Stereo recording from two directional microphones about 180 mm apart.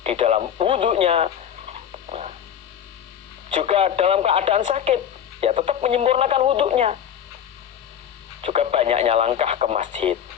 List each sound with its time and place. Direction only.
0.0 s radio: 35° right (ahead or behind)
3.5 s speech: 35° right (ahead or behind)
8.4 s speech: 35° right (ahead or behind)